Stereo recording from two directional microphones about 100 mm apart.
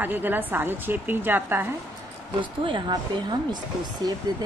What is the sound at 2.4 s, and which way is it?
A woman's voice, 50° right (ahead or behind).